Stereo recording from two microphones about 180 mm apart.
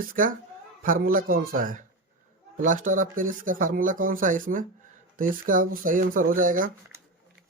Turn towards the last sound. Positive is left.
turn(degrees=-50)  # may be behind; listen again after turning